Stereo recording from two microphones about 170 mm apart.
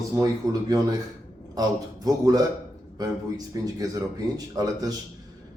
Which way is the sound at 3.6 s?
20° right (ahead or behind).